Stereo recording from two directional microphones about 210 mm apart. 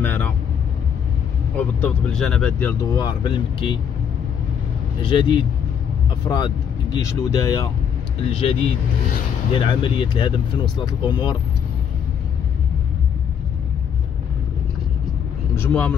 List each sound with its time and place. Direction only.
0.0 s vehicle: 10° left (ahead or behind)
1.8 s speech: 5° left (ahead or behind)
2.9 s speech: 20° left (ahead or behind)
5.0 s speech: 25° left (ahead or behind)
8.3 s speech: 25° left (ahead or behind)
15.5 s speech: 10° left (ahead or behind)